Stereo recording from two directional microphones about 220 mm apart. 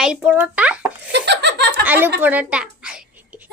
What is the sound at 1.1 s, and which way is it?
Laughter, 50° right (ahead or behind).